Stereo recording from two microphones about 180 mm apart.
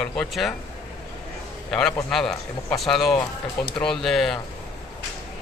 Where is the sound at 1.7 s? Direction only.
5° left (ahead or behind).